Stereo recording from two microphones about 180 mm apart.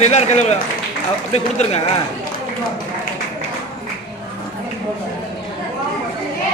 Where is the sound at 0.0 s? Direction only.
40° left (ahead or behind).